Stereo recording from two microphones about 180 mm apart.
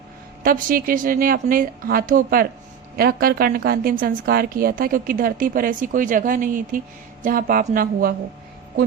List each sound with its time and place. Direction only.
0.4 s a woman's voice: 50° right (ahead or behind)